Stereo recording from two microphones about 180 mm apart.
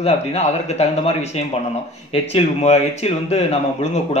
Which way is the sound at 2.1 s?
35° left (ahead or behind).